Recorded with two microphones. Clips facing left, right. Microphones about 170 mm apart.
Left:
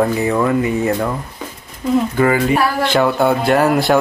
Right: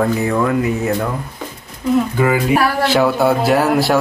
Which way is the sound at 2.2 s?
5° right (ahead or behind).